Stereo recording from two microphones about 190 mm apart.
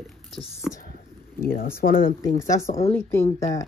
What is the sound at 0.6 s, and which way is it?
Speech, centre (ahead or behind).